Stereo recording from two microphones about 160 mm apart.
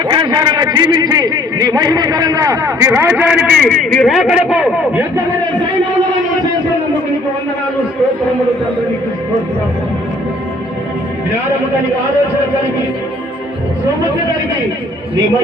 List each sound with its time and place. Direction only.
0.0 s a man's voice: 30° right (ahead or behind); by 3.3 s 10° right (ahead or behind)
3.4 s a man's voice: 5° left (ahead or behind)